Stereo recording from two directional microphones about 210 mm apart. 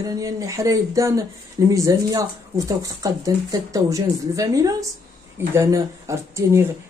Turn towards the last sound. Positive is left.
turn(degrees=-15)  # may be behind; listen again after turning